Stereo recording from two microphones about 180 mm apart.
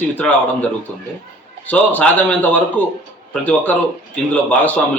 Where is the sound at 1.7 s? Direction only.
10° left (ahead or behind).